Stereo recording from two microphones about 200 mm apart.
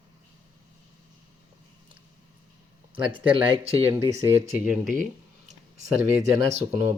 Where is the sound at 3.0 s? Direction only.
25° right (ahead or behind).